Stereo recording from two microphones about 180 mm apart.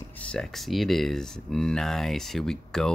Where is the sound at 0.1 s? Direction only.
5° left (ahead or behind).